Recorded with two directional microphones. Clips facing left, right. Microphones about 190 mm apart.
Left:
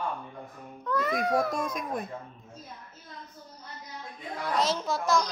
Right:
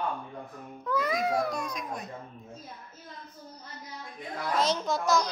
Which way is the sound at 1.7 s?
50° left (ahead or behind).